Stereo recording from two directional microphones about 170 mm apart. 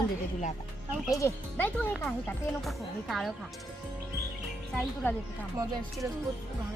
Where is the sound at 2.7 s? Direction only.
Centre (ahead or behind).